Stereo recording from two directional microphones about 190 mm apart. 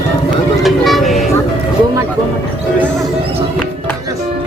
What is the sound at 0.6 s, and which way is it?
Vehicle, centre (ahead or behind).